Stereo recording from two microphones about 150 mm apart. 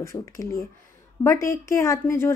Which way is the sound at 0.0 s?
20° left (ahead or behind).